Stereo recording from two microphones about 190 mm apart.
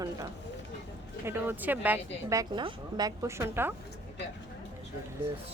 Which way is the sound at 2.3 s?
20° right (ahead or behind).